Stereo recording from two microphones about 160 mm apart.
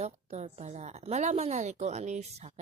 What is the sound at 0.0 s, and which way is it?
A woman's voice, 45° right (ahead or behind).